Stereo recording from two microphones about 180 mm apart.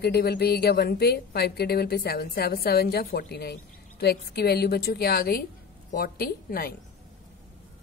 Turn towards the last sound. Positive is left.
turn(degrees=55)  # may be behind; listen again after turning